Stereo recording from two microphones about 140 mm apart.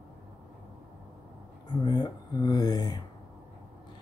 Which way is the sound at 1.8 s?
30° left (ahead or behind).